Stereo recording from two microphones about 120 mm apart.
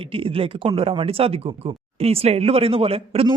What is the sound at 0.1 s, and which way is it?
Speech, 50° right (ahead or behind).